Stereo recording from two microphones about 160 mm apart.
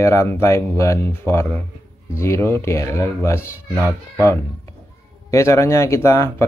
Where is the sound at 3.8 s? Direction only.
20° right (ahead or behind).